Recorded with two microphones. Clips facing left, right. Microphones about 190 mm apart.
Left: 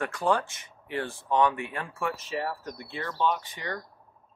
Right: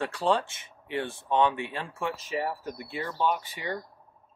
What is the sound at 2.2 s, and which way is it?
Speech, 15° right (ahead or behind).